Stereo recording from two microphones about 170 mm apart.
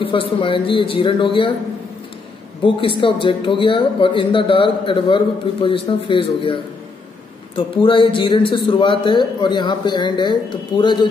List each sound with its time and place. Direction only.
0.0 s a man's voice: 30° left (ahead or behind)
2.6 s a man's voice: 30° left (ahead or behind)